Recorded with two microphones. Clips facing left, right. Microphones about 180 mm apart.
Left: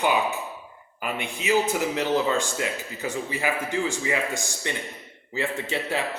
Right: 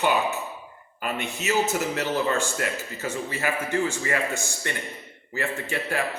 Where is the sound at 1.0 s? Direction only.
10° left (ahead or behind).